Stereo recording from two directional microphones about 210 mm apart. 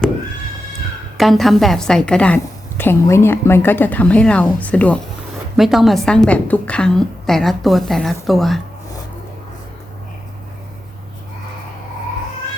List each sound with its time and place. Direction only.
1.1 s a woman's voice: centre (ahead or behind)